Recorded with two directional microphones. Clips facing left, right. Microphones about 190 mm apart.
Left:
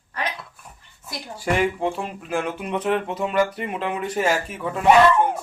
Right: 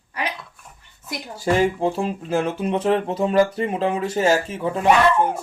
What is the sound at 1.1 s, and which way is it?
Speech, 30° right (ahead or behind).